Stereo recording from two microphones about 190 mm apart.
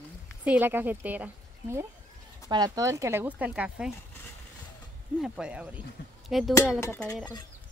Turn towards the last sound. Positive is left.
turn(degrees=15)  # may be behind; listen again after turning